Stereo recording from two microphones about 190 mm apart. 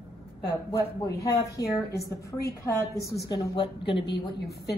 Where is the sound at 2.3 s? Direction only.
15° left (ahead or behind).